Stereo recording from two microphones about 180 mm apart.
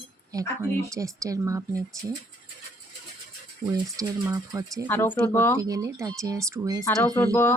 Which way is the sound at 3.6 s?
15° right (ahead or behind).